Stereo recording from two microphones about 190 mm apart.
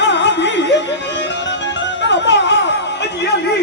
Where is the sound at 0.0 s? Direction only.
70° left (ahead or behind).